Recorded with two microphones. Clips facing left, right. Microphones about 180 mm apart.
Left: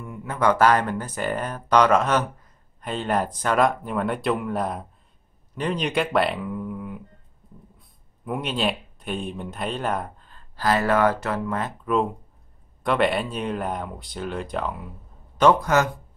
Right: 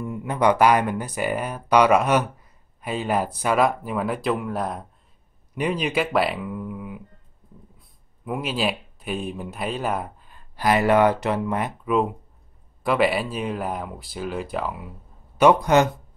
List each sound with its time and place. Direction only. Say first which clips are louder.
0.0 s speech: right 2 dB; 20° right (ahead or behind); by 7.0 s 5° right (ahead or behind)
8.3 s speech: even; 5° right (ahead or behind)
11.9 s speech: right 1 dB; centre (ahead or behind); by 15.9 s 20° right (ahead or behind)